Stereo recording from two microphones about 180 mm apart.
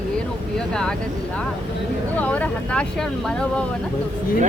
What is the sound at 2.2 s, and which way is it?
Speech, 5° left (ahead or behind).